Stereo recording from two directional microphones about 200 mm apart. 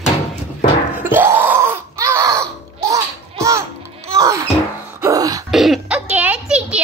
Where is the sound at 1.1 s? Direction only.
10° right (ahead or behind).